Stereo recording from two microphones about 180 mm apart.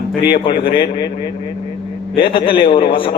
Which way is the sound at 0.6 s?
25° left (ahead or behind).